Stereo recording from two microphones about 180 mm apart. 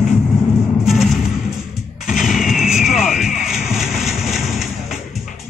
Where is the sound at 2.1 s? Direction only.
Centre (ahead or behind).